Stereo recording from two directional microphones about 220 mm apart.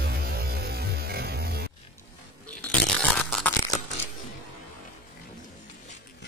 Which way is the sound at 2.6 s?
5° left (ahead or behind).